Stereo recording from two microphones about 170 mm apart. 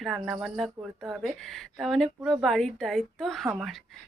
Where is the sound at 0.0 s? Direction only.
Centre (ahead or behind).